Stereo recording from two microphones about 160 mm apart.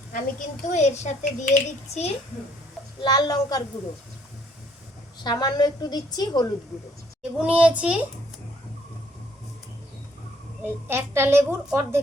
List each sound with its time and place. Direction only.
0.1 s a woman's voice: 50° left (ahead or behind)
3.0 s a woman's voice: 25° left (ahead or behind)
5.2 s a woman's voice: 25° left (ahead or behind)
7.3 s a woman's voice: 10° right (ahead or behind)
10.8 s a woman's voice: 15° right (ahead or behind)